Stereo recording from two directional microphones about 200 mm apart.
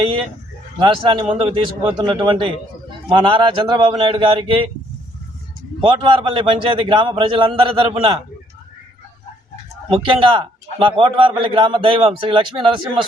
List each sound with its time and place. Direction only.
0.0 s a man's voice: 25° right (ahead or behind)
5.8 s a man's voice: 25° right (ahead or behind)
9.9 s a man's voice: 25° right (ahead or behind)